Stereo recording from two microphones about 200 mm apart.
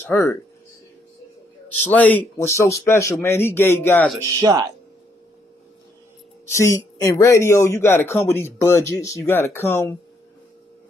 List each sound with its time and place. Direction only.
0.0 s speech: 10° left (ahead or behind)
1.9 s speech: 10° left (ahead or behind)
4.2 s speech: 20° right (ahead or behind)
6.5 s speech: 15° left (ahead or behind)